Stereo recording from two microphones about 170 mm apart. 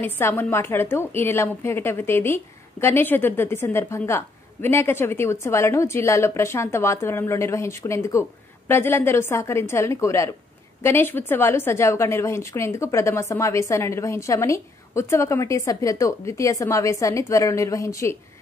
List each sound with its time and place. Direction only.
0.0 s a woman's voice: 15° left (ahead or behind)